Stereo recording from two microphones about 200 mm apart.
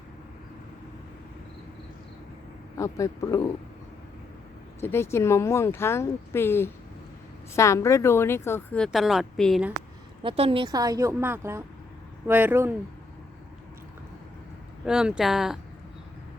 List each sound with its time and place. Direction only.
2.7 s speech: 15° left (ahead or behind)
4.8 s speech: 10° left (ahead or behind)
10.2 s a woman's voice: 30° right (ahead or behind); by 12.7 s 10° right (ahead or behind)
14.8 s speech: 5° right (ahead or behind)